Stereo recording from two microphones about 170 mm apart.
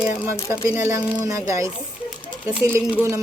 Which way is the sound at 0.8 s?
15° right (ahead or behind).